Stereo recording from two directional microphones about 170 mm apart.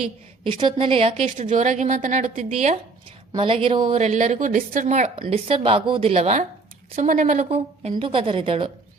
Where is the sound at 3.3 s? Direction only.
30° right (ahead or behind).